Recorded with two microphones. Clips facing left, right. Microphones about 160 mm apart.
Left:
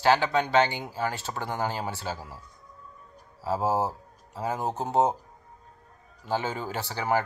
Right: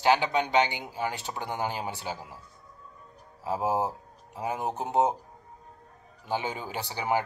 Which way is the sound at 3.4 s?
15° right (ahead or behind).